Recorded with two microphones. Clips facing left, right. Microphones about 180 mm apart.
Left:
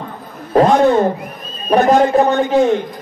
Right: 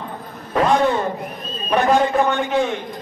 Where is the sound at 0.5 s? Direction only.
40° left (ahead or behind).